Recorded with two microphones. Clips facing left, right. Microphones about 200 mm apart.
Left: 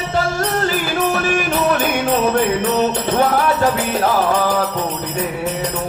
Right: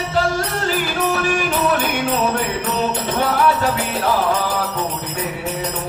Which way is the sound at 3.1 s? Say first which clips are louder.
Left 5 dB; 45° left (ahead or behind).